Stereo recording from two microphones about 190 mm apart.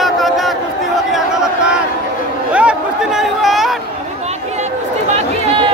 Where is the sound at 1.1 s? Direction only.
5° right (ahead or behind).